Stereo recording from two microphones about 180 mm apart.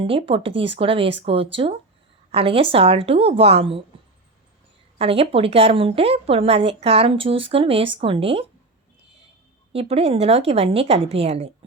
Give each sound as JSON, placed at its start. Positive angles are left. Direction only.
{"t": 0.0, "sound": "a woman's voice", "side_deg": -30}
{"t": 4.9, "sound": "a woman's voice", "side_deg": -35}
{"t": 9.7, "sound": "a woman's voice", "side_deg": -35}